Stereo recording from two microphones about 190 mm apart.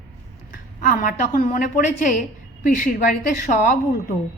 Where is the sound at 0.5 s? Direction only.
45° left (ahead or behind).